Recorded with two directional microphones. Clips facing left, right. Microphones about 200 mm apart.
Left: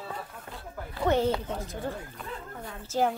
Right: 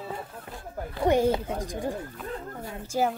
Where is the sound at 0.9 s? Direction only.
15° right (ahead or behind).